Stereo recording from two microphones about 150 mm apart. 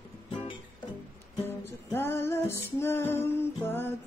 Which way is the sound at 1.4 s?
15° left (ahead or behind).